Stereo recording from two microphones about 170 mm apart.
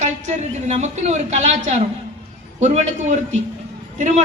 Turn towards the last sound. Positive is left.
turn(degrees=-45)  # may be behind; listen again after turning